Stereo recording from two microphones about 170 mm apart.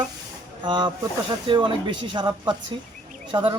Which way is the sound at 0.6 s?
25° right (ahead or behind).